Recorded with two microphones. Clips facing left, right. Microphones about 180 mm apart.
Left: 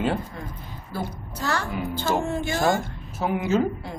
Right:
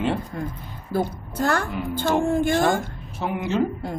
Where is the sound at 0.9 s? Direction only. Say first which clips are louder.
Right 7 dB; 50° right (ahead or behind).